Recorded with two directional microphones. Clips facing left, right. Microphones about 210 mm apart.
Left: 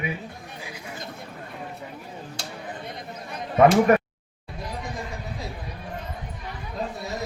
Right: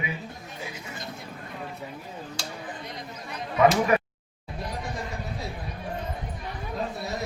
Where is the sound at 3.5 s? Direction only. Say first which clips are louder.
Left 4 dB; 50° left (ahead or behind).